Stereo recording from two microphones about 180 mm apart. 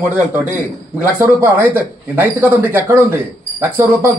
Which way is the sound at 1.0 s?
10° right (ahead or behind).